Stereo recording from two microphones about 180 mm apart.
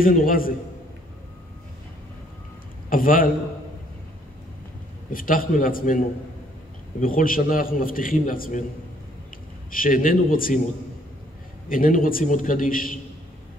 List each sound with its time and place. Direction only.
0.0 s a man's voice: 50° left (ahead or behind)
2.9 s a man's voice: 50° left (ahead or behind)
5.1 s a man's voice: 50° left (ahead or behind)
9.7 s a man's voice: 50° left (ahead or behind)
11.7 s a man's voice: 50° left (ahead or behind)